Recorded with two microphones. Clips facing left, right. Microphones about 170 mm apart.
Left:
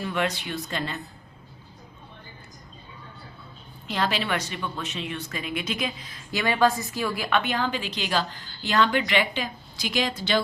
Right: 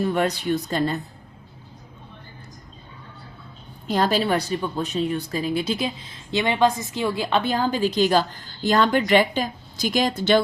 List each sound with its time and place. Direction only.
0.0 s speech: 40° right (ahead or behind)
3.8 s a woman's voice: 40° right (ahead or behind)